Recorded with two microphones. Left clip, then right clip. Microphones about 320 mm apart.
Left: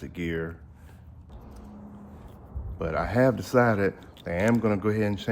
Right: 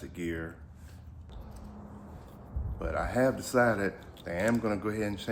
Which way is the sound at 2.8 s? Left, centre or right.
Left.